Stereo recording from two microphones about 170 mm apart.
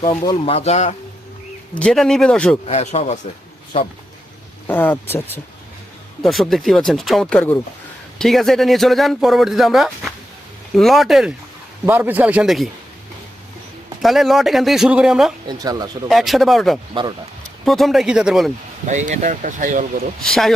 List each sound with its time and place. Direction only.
0.0 s speech: 30° left (ahead or behind)
1.8 s speech: centre (ahead or behind)
2.6 s speech: 40° left (ahead or behind)
4.7 s speech: 10° left (ahead or behind)
6.2 s speech: centre (ahead or behind)
14.0 s speech: centre (ahead or behind)
15.4 s speech: 20° right (ahead or behind)
16.0 s speech: centre (ahead or behind)
16.9 s speech: 25° right (ahead or behind)
17.7 s speech: centre (ahead or behind)
18.9 s speech: 45° right (ahead or behind)
20.2 s speech: 5° left (ahead or behind)